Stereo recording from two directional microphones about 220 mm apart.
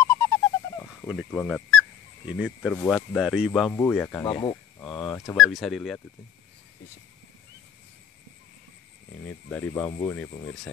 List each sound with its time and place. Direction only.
0.1 s a sound: 10° left (ahead or behind)
1.0 s speech: centre (ahead or behind)
3.7 s speech: 10° left (ahead or behind)
4.4 s a sound: 20° left (ahead or behind)
4.8 s speech: 5° left (ahead or behind)
5.4 s speech: centre (ahead or behind)
9.5 s speech: 5° left (ahead or behind)